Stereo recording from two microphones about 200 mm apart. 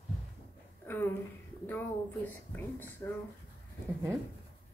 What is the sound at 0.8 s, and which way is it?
Speech, 10° left (ahead or behind).